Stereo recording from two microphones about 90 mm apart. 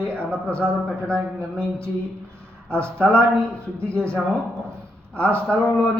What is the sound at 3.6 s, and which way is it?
Speech, 15° left (ahead or behind).